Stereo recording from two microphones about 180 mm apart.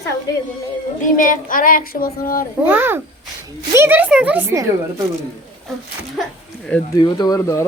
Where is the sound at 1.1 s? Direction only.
50° left (ahead or behind).